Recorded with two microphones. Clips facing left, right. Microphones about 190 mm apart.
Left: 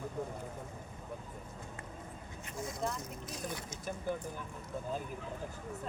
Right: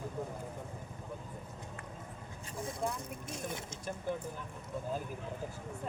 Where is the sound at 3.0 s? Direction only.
25° right (ahead or behind).